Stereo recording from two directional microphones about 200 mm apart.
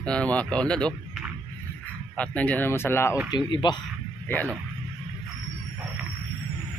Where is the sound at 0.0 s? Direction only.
5° left (ahead or behind).